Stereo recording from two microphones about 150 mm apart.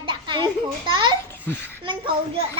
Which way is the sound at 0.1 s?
30° right (ahead or behind).